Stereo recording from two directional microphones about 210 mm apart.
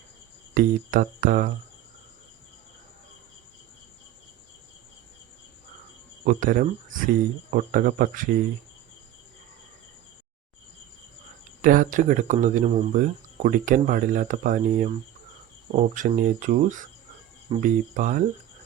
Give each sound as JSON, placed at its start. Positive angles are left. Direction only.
{"t": 0.5, "sound": "speech", "side_deg": -40}
{"t": 6.2, "sound": "speech", "side_deg": -40}
{"t": 11.6, "sound": "speech", "side_deg": -40}